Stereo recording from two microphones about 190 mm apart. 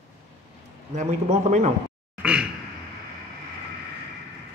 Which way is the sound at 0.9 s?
40° right (ahead or behind).